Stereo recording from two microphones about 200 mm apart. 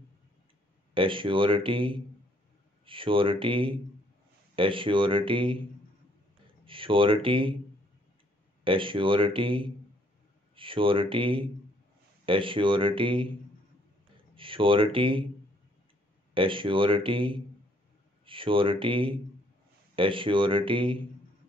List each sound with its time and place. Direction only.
0.9 s speech: 25° right (ahead or behind)
6.6 s speech: 25° right (ahead or behind)
8.6 s speech: 25° right (ahead or behind)
14.3 s speech: 25° right (ahead or behind)
16.3 s speech: 25° right (ahead or behind)